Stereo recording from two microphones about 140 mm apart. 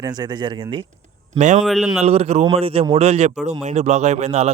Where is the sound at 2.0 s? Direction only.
50° right (ahead or behind).